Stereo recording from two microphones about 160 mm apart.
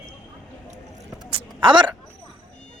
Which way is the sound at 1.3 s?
35° right (ahead or behind).